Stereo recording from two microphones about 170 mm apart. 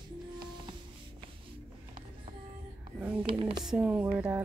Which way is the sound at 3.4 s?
30° right (ahead or behind).